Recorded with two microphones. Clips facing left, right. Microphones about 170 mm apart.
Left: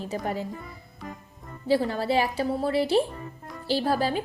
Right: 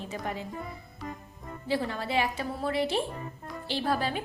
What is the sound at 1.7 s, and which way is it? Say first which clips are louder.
A woman's voice: left 6 dB; 35° left (ahead or behind).